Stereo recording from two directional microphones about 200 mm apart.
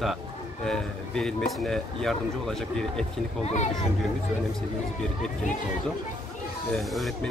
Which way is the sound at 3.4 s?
35° left (ahead or behind).